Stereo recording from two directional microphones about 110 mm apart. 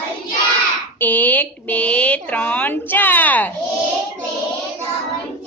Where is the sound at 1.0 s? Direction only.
15° left (ahead or behind).